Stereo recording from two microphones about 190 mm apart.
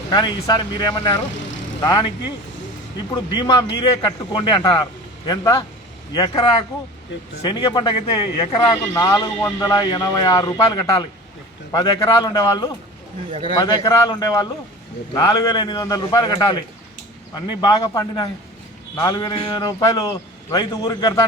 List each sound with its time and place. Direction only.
0.1 s speech: 20° left (ahead or behind)
3.3 s speech: 25° left (ahead or behind)